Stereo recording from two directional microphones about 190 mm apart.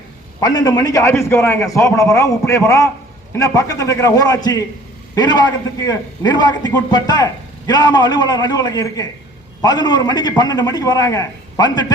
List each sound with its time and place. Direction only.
0.3 s a man's voice: 20° left (ahead or behind)